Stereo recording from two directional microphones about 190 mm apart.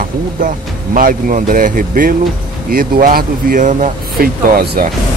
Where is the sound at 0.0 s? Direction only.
45° right (ahead or behind).